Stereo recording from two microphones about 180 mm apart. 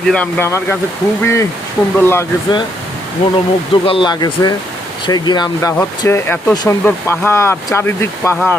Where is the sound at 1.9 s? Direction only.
10° left (ahead or behind).